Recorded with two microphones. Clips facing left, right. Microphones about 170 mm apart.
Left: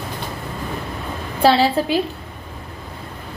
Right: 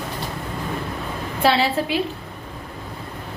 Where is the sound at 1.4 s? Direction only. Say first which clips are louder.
Left 4 dB; 35° left (ahead or behind).